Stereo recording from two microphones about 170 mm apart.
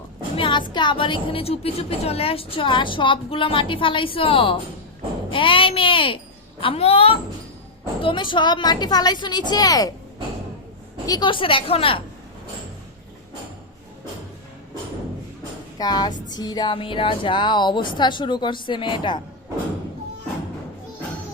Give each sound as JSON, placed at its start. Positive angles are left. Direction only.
{"t": 0.3, "sound": "a sound", "side_deg": 30}
{"t": 0.7, "sound": "a woman's voice", "side_deg": 25}
{"t": 11.0, "sound": "a woman's voice", "side_deg": 25}
{"t": 15.8, "sound": "speech", "side_deg": 25}